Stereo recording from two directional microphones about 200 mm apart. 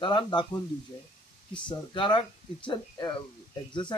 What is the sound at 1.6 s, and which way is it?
Speech, 25° left (ahead or behind).